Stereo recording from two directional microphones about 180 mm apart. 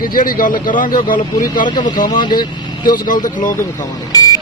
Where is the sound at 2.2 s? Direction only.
25° left (ahead or behind).